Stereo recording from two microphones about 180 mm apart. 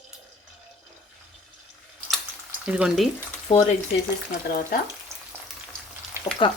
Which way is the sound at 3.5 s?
30° left (ahead or behind).